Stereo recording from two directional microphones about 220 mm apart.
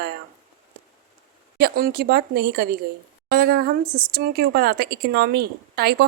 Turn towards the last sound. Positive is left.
turn(degrees=-45)  # may be behind; listen again after turning